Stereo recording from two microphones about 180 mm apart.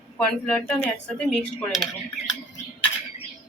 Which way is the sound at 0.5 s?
10° left (ahead or behind).